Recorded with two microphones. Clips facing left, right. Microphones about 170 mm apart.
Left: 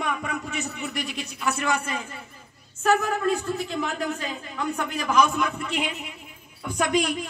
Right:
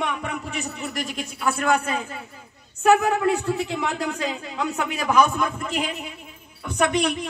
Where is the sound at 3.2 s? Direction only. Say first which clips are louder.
Right 3 dB; 70° right (ahead or behind); by 4.7 s 90° right.